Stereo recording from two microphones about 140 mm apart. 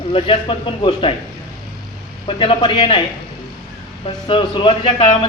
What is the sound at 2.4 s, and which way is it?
Speech, 40° left (ahead or behind).